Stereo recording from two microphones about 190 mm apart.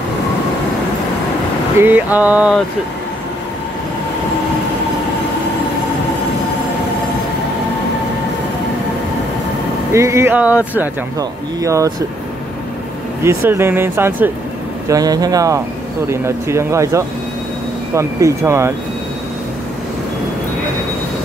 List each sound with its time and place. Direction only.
1.8 s speech: 10° right (ahead or behind)
9.9 s speech: 15° right (ahead or behind)
13.2 s speech: 15° right (ahead or behind)